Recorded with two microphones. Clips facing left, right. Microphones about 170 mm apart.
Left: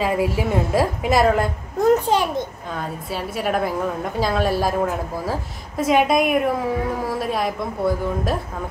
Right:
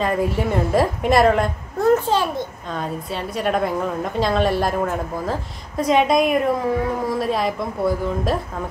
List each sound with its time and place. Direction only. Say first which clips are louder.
0.0 s a woman's voice: even; 5° left (ahead or behind)
1.8 s a child's voice: even; 15° left (ahead or behind)
2.7 s a woman's voice: right 2 dB; 5° left (ahead or behind)